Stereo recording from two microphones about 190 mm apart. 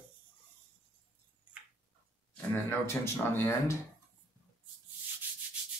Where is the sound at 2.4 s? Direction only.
10° left (ahead or behind).